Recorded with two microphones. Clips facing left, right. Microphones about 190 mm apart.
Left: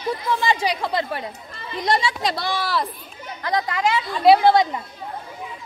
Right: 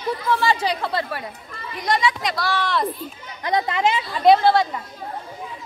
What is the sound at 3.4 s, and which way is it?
Speech, 20° right (ahead or behind).